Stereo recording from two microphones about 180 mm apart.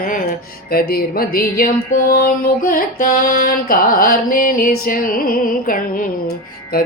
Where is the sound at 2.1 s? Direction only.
55° left (ahead or behind).